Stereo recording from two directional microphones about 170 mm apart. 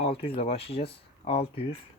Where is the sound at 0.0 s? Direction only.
35° left (ahead or behind).